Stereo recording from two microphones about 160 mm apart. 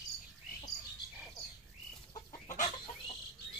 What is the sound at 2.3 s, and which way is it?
Chicken, 55° left (ahead or behind).